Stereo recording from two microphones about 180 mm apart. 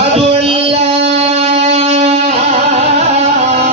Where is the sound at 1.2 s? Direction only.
35° right (ahead or behind).